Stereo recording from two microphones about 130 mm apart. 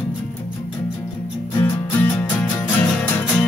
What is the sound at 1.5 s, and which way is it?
Music, 15° left (ahead or behind).